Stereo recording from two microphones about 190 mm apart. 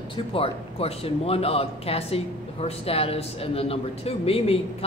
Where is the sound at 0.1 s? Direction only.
30° left (ahead or behind).